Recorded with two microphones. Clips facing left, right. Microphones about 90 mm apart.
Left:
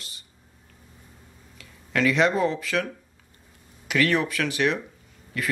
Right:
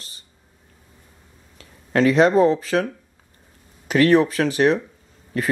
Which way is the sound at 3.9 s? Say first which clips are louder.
Right 7 dB; 35° right (ahead or behind).